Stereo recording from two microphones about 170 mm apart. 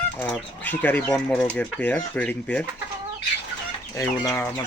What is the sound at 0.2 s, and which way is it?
Speech, 10° left (ahead or behind).